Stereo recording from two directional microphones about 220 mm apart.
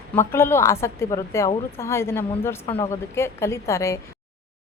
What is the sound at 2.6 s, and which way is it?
Speech, 25° left (ahead or behind).